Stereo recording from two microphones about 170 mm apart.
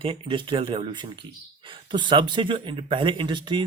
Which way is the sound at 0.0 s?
30° right (ahead or behind).